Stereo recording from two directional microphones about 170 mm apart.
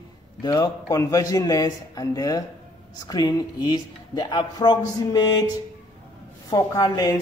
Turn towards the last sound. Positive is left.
turn(degrees=25)  # may be behind; listen again after turning